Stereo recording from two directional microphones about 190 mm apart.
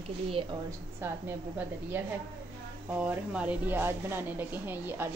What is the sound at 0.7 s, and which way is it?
A woman's voice, 10° right (ahead or behind).